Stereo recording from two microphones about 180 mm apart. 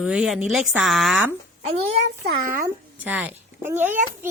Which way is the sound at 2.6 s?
10° right (ahead or behind).